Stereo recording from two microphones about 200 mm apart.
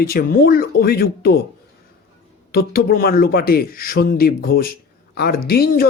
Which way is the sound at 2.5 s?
50° left (ahead or behind).